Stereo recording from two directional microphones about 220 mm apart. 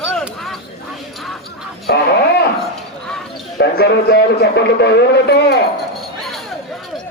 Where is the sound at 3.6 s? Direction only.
50° left (ahead or behind).